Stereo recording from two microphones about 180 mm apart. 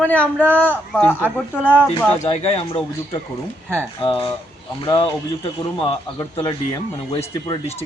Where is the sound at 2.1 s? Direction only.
35° left (ahead or behind).